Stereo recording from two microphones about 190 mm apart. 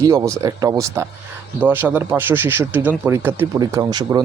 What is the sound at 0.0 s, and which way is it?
Speech, 15° right (ahead or behind).